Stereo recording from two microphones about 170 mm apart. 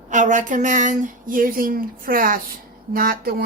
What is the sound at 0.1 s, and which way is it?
A woman's voice, 50° right (ahead or behind).